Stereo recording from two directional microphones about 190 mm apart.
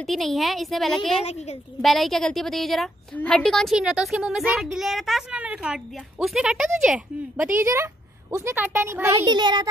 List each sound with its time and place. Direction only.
0.0 s a woman's voice: centre (ahead or behind)
1.2 s a woman's voice: 35° left (ahead or behind)
1.8 s a woman's voice: centre (ahead or behind)
7.6 s speech: 15° right (ahead or behind)